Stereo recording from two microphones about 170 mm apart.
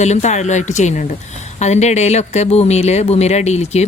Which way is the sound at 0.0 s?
45° left (ahead or behind).